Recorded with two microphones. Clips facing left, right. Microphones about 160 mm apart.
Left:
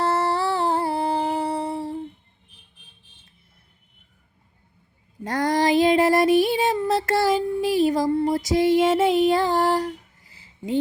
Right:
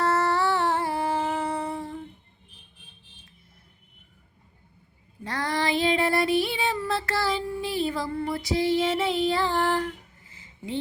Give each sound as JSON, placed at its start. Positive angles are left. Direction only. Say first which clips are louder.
{"t": 0.0, "sound": "humming", "louder": "left 1 dB", "side_deg": 30}
{"t": 5.2, "sound": "child singing", "louder": "left 7 dB", "side_deg": 45}
{"t": 6.8, "sound": "a sound", "louder": "left 6 dB", "side_deg": 45}